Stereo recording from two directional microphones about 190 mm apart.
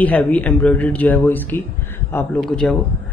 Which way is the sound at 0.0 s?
10° left (ahead or behind).